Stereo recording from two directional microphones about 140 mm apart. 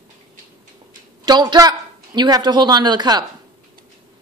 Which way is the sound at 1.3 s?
30° right (ahead or behind).